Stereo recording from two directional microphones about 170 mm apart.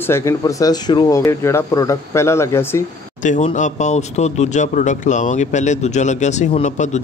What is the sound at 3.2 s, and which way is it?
A man's voice, 45° left (ahead or behind).